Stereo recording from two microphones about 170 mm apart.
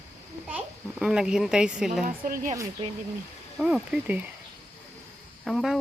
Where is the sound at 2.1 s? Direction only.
55° right (ahead or behind).